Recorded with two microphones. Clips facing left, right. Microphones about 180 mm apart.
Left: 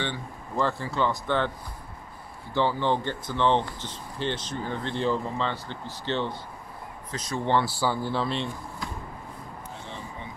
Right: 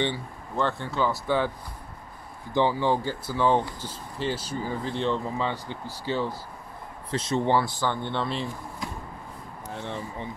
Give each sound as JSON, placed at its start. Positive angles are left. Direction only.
{"t": 0.6, "sound": "speech", "side_deg": 0}
{"t": 2.5, "sound": "speech", "side_deg": -15}
{"t": 5.4, "sound": "speech", "side_deg": -10}
{"t": 7.1, "sound": "speech", "side_deg": -25}
{"t": 7.6, "sound": "speech", "side_deg": 10}